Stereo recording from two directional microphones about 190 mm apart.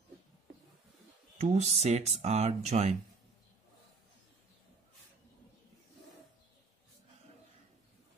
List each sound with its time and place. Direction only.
1.4 s speech: 35° right (ahead or behind)